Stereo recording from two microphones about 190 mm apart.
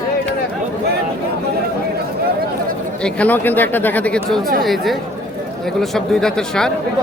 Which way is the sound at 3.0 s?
5° left (ahead or behind).